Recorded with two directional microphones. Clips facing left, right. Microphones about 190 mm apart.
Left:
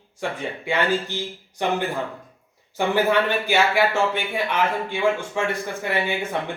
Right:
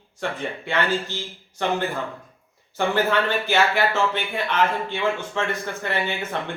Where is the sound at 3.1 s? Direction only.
10° left (ahead or behind).